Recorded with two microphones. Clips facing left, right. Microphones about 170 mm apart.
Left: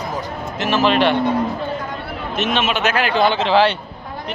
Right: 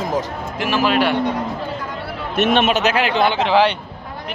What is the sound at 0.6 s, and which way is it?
Speech, 10° right (ahead or behind).